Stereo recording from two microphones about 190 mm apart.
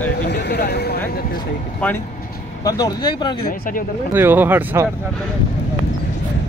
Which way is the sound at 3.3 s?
50° left (ahead or behind).